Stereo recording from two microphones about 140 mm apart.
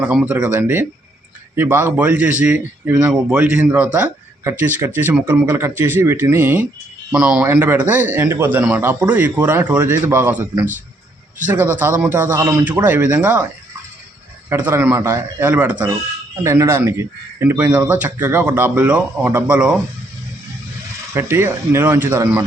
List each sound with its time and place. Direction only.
0.3 s a man's voice: 10° right (ahead or behind)
7.4 s a man's voice: 15° right (ahead or behind)
14.5 s a man's voice: 15° right (ahead or behind)
16.4 s a man's voice: 20° right (ahead or behind)
21.1 s a man's voice: 15° right (ahead or behind)